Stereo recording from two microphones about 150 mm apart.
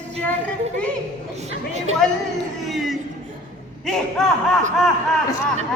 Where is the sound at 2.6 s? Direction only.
Centre (ahead or behind).